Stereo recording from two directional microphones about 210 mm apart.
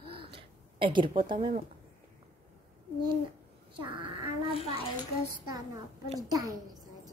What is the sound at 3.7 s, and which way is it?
Speech, 25° right (ahead or behind).